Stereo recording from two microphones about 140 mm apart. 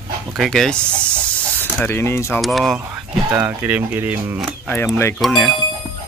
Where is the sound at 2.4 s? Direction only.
Centre (ahead or behind).